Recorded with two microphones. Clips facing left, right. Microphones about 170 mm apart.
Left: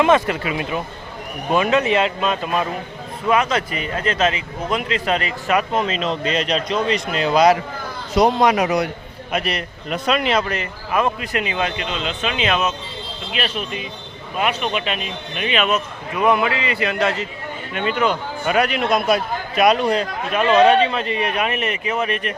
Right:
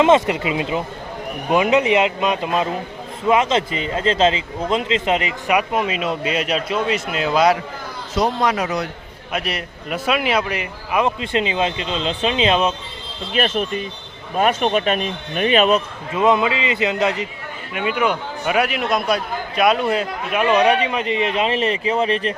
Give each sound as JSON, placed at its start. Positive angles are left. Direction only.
{"t": 0.0, "sound": "a man's voice", "side_deg": -20}
{"t": 8.1, "sound": "a man's voice", "side_deg": 15}
{"t": 9.3, "sound": "a man's voice", "side_deg": 0}
{"t": 11.2, "sound": "speech", "side_deg": -25}
{"t": 13.3, "sound": "a man's voice", "side_deg": -45}
{"t": 16.1, "sound": "a man's voice", "side_deg": -20}